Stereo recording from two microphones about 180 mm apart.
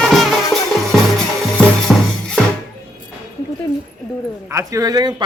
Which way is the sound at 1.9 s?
5° left (ahead or behind).